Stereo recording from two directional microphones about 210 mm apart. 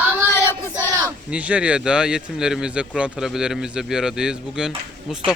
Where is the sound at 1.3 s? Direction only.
5° right (ahead or behind).